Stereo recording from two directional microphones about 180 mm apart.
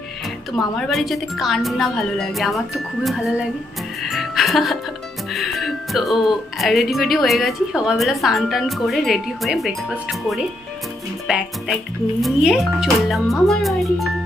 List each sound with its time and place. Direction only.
0.5 s speech: centre (ahead or behind)
4.0 s music: centre (ahead or behind)
5.3 s speech: centre (ahead or behind)